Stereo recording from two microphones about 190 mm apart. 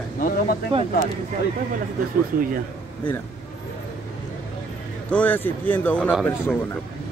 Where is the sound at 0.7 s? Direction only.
30° right (ahead or behind).